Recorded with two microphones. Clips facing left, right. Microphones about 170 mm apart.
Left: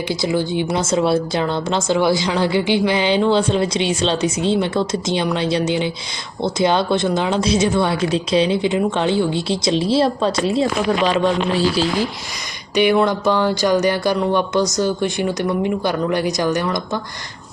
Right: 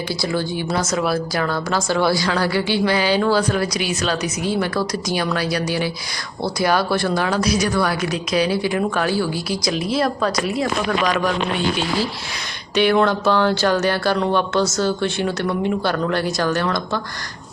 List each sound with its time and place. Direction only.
0.1 s speech: 15° left (ahead or behind)
12.7 s speech: 15° left (ahead or behind)